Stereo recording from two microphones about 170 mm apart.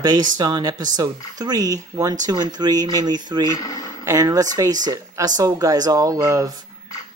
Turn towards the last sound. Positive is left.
turn(degrees=-20)  # may be behind; listen again after turning